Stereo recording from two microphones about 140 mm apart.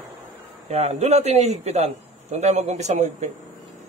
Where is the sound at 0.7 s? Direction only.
50° right (ahead or behind).